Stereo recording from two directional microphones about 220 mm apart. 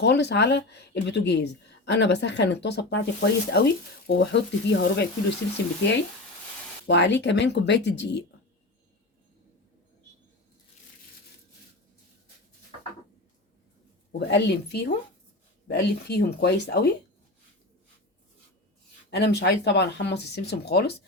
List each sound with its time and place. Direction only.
0.0 s speech: 50° left (ahead or behind)
6.8 s speech: 50° left (ahead or behind)
14.1 s speech: 50° left (ahead or behind)
19.1 s speech: 50° left (ahead or behind)